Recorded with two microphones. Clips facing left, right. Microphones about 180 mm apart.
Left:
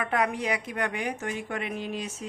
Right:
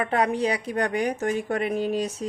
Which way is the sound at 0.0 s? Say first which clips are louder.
Right 4 dB; 30° right (ahead or behind).